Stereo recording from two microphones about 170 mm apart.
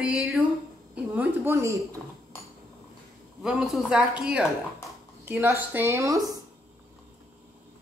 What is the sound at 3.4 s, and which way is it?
Speech, 5° right (ahead or behind).